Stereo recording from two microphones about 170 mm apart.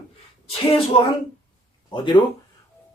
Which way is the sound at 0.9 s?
30° left (ahead or behind).